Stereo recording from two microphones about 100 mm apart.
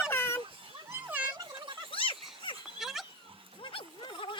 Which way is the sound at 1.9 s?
60° left (ahead or behind).